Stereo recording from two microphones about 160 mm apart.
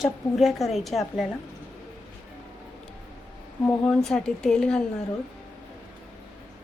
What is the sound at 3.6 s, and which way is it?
A woman's voice, 5° left (ahead or behind).